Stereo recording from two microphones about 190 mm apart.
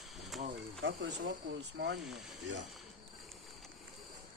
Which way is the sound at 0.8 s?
85° right.